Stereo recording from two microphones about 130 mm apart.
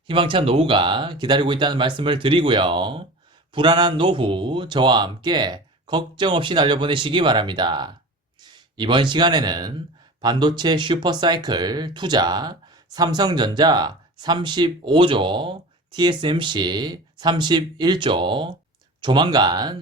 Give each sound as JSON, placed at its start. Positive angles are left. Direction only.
{"t": 0.1, "sound": "speech", "side_deg": -40}